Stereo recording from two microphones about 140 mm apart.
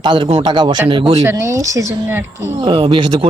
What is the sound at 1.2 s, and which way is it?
Speech, 20° right (ahead or behind).